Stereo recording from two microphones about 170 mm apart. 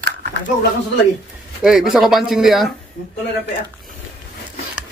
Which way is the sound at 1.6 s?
5° right (ahead or behind).